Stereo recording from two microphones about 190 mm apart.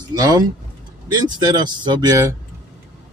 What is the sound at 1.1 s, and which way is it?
Speech, 20° right (ahead or behind).